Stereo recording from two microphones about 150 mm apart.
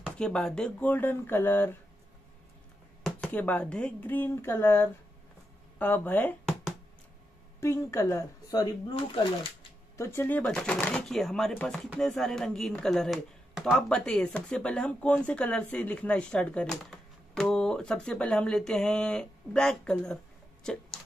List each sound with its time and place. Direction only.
0.2 s speech: 5° left (ahead or behind)
3.2 s speech: 10° left (ahead or behind)
7.6 s speech: 20° left (ahead or behind)
9.9 s speech: 15° left (ahead or behind)
10.4 s speech: 5° left (ahead or behind)